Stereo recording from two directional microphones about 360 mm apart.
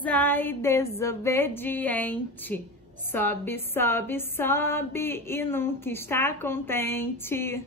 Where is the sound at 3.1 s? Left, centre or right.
Centre.